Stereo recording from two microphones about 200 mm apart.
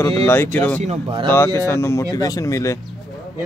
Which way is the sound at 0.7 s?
35° right (ahead or behind).